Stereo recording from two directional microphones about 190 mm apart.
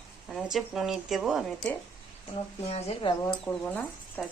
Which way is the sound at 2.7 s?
30° left (ahead or behind).